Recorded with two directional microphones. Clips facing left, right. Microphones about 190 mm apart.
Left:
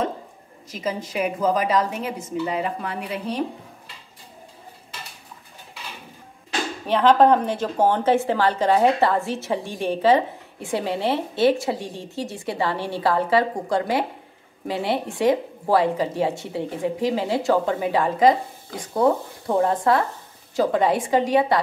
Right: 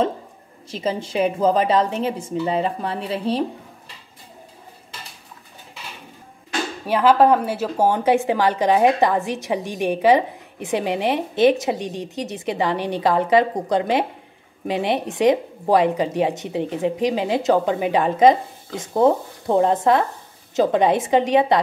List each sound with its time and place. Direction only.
0.7 s a woman's voice: 30° right (ahead or behind)
6.9 s a woman's voice: 5° right (ahead or behind)